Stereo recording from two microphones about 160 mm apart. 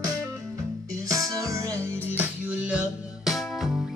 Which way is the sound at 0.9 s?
20° right (ahead or behind).